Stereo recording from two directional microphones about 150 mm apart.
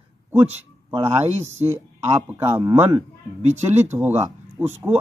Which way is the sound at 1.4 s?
15° right (ahead or behind).